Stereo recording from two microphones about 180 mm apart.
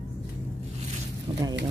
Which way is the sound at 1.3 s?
30° right (ahead or behind).